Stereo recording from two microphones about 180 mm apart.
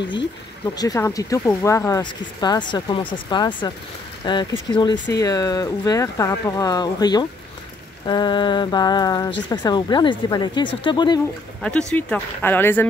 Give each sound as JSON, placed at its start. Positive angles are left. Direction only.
{"t": 0.7, "sound": "speech", "side_deg": 20}
{"t": 11.6, "sound": "speech", "side_deg": 5}